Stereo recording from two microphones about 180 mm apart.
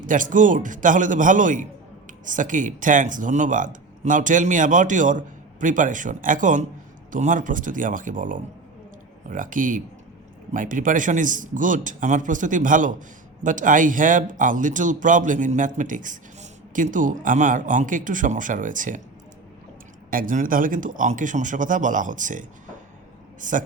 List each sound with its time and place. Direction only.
0.0 s speech: 45° right (ahead or behind)
20.1 s speech: 50° right (ahead or behind)